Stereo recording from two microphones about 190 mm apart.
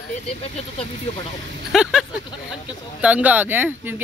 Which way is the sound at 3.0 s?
10° right (ahead or behind).